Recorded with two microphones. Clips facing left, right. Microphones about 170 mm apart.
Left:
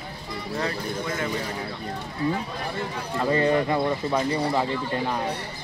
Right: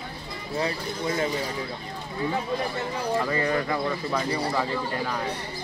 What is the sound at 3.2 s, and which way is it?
Speech, 30° left (ahead or behind).